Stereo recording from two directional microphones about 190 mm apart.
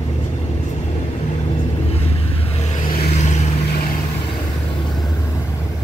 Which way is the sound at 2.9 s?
50° left (ahead or behind).